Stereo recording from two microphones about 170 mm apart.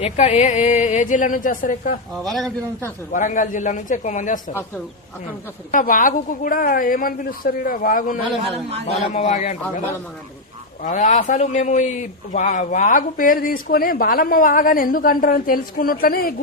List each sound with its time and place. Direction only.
0.0 s a woman's voice: 40° left (ahead or behind)
2.2 s a man's voice: centre (ahead or behind)
3.1 s a woman's voice: 50° left (ahead or behind)
5.7 s a woman's voice: 50° left (ahead or behind)
10.8 s speech: 45° left (ahead or behind)